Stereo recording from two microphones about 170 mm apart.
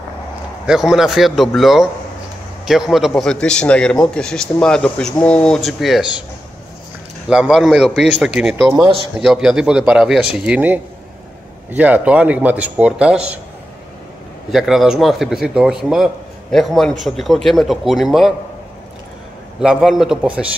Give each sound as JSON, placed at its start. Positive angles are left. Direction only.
{"t": 0.7, "sound": "a man's voice", "side_deg": 0}
{"t": 7.2, "sound": "a man's voice", "side_deg": -5}
{"t": 8.6, "sound": "speech", "side_deg": -25}
{"t": 9.2, "sound": "a man's voice", "side_deg": -5}
{"t": 14.5, "sound": "a man's voice", "side_deg": 0}
{"t": 19.6, "sound": "a man's voice", "side_deg": -5}